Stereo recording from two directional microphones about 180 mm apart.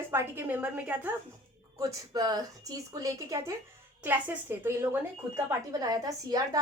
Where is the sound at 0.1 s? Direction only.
15° right (ahead or behind).